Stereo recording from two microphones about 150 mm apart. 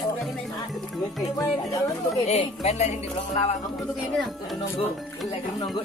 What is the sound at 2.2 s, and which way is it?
Speech, 45° left (ahead or behind).